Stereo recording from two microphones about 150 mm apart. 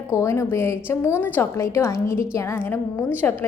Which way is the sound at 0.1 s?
20° left (ahead or behind).